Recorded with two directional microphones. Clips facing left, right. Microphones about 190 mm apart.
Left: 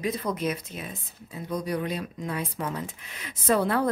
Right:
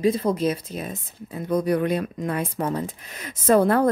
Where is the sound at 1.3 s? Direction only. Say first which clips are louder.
Right 8 dB; 55° right (ahead or behind).